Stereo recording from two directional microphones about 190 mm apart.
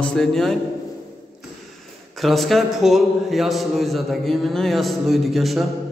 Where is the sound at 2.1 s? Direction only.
Centre (ahead or behind).